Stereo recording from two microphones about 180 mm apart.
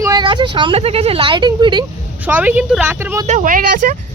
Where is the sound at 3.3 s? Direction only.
45° right (ahead or behind).